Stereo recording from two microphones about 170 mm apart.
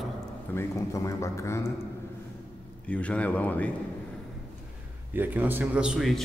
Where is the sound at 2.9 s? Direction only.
5° left (ahead or behind).